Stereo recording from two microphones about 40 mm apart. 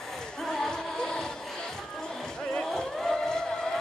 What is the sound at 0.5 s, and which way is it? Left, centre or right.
Music, centre.